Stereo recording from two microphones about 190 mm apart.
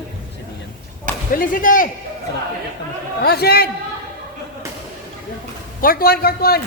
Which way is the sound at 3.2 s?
55° left (ahead or behind).